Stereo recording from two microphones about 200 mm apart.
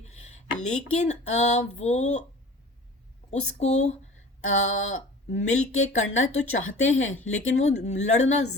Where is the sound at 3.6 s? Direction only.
35° left (ahead or behind).